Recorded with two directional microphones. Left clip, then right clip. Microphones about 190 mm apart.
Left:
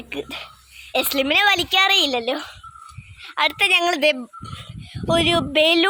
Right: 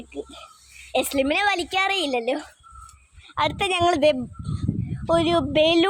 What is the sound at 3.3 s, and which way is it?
Speech, 20° right (ahead or behind).